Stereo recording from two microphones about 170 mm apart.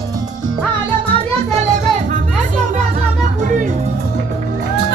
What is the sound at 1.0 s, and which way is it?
Music, 30° right (ahead or behind).